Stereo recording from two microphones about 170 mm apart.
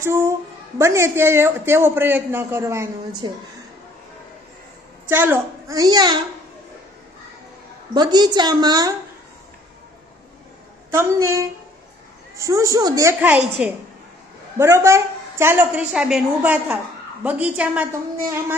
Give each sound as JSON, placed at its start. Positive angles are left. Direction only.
{"t": 0.0, "sound": "a man's voice", "side_deg": -15}
{"t": 5.0, "sound": "a child's voice", "side_deg": -10}
{"t": 7.9, "sound": "a child's voice", "side_deg": -25}
{"t": 10.9, "sound": "a man's voice", "side_deg": -15}